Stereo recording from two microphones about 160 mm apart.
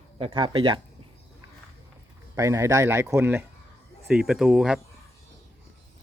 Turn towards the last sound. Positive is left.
turn(degrees=-5)  # may be behind; listen again after turning